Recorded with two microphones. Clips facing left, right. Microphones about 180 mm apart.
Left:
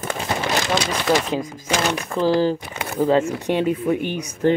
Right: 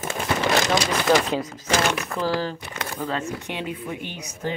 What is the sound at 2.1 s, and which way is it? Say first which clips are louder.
Speech: left 7 dB; 30° left (ahead or behind).